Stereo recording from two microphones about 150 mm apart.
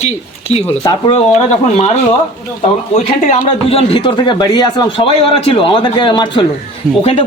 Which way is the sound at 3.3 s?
40° left (ahead or behind).